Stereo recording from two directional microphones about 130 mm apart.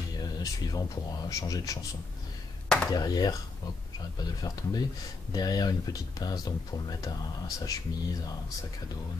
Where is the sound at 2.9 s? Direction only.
30° left (ahead or behind).